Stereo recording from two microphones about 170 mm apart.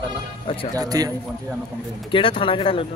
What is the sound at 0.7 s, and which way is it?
Speech, 20° right (ahead or behind).